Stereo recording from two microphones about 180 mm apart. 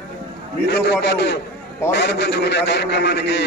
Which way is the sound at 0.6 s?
70° left (ahead or behind).